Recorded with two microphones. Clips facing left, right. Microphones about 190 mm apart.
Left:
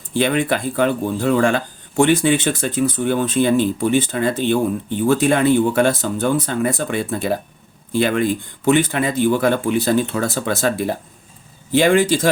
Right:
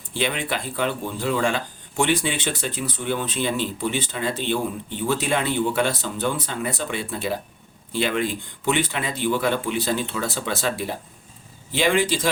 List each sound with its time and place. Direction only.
0.1 s speech: 50° left (ahead or behind)